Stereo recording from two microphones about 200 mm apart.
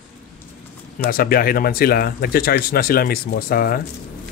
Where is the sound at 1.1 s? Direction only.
45° left (ahead or behind).